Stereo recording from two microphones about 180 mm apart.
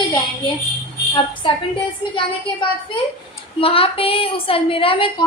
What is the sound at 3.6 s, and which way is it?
A woman's voice, 30° left (ahead or behind).